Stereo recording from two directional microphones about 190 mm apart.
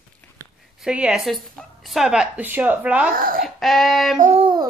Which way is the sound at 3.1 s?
50° right (ahead or behind).